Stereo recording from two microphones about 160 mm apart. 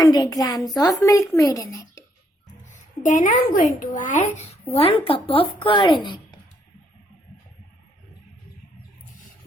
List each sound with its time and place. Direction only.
0.0 s speech: 25° left (ahead or behind)
2.7 s speech: 50° left (ahead or behind)
4.7 s speech: 35° left (ahead or behind)